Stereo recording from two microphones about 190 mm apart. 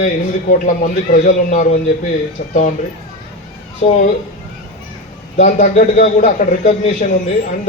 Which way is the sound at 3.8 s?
35° left (ahead or behind).